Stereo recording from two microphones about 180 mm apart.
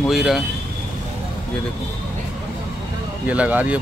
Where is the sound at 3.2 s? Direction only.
5° right (ahead or behind).